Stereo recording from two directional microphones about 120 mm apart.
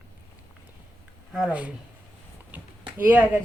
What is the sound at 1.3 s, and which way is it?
Speech, 10° right (ahead or behind).